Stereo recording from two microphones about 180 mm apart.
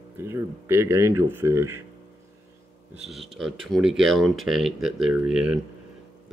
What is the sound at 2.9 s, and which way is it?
Speech, centre (ahead or behind).